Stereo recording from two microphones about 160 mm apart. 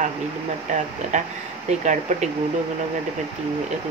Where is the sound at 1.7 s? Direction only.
45° right (ahead or behind).